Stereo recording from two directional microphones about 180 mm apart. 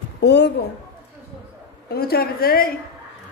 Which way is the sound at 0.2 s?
70° left (ahead or behind).